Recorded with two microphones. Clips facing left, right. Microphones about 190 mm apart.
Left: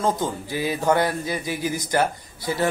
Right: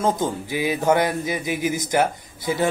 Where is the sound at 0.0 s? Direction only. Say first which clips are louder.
Right 2 dB; 15° right (ahead or behind).